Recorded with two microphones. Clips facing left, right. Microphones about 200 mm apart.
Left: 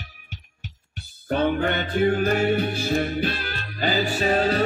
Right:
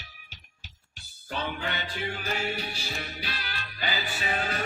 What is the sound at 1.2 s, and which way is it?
Music, 55° left (ahead or behind).